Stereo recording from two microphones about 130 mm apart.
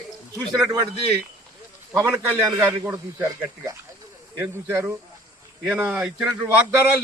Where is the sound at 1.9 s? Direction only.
20° right (ahead or behind).